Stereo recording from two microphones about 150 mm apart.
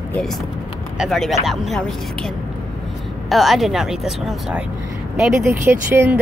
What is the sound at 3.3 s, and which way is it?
Speech, centre (ahead or behind).